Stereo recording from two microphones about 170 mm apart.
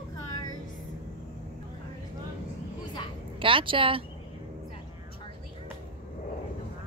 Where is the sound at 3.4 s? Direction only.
30° right (ahead or behind).